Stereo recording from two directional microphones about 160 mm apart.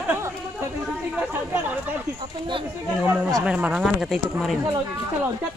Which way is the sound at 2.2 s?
30° right (ahead or behind).